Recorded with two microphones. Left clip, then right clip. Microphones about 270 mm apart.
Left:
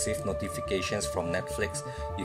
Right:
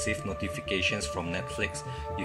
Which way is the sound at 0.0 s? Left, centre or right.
Left.